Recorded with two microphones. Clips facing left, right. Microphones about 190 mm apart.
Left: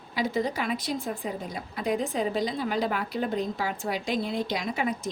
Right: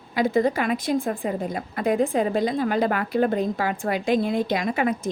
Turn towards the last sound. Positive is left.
turn(degrees=-55)  # may be behind; listen again after turning